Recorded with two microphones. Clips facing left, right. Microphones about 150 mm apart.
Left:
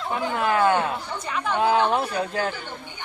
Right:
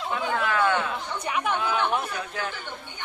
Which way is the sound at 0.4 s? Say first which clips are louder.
Left 5 dB; 40° left (ahead or behind).